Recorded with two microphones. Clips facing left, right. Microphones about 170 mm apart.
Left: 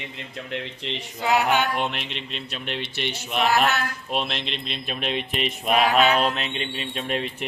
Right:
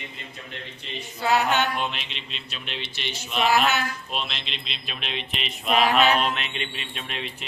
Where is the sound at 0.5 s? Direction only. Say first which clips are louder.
Left 10 dB; 90° left.